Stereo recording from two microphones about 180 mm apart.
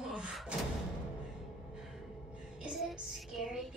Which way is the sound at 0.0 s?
5° right (ahead or behind).